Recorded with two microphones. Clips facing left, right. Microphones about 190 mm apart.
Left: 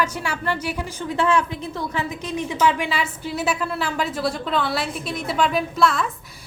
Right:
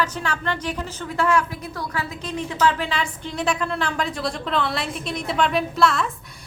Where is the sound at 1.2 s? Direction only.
25° left (ahead or behind).